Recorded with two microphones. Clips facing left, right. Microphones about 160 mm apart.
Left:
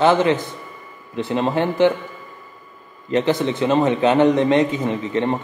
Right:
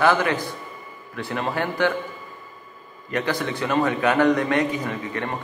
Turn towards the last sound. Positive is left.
turn(degrees=25)  # may be behind; listen again after turning